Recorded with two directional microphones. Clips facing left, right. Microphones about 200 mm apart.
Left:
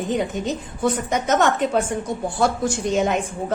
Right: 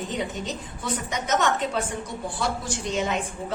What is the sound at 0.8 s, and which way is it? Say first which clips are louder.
A woman's voice: left 9 dB; 50° left (ahead or behind).